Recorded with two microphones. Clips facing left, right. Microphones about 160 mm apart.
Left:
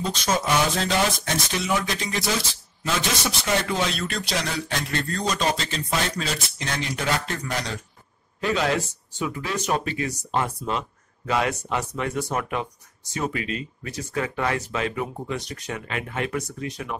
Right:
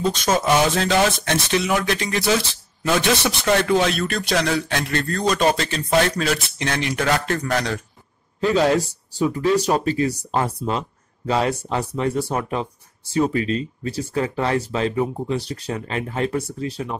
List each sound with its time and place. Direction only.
0.7 s a man's voice: 70° right (ahead or behind)
8.5 s speech: 35° right (ahead or behind)